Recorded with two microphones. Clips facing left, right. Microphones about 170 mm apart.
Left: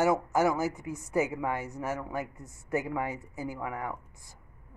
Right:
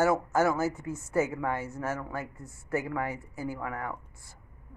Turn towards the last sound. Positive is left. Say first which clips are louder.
# even
turn(degrees=15)  # may be behind; listen again after turning